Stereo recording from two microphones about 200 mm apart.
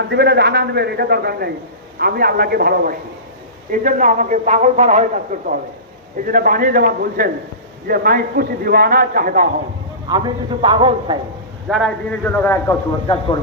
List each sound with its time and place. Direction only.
0.0 s a man's voice: 55° right (ahead or behind)
10.1 s a man's voice: 25° right (ahead or behind)
11.7 s a man's voice: 5° left (ahead or behind)